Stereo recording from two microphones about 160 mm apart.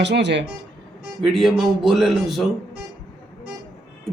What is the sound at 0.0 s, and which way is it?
Speech, 90° right.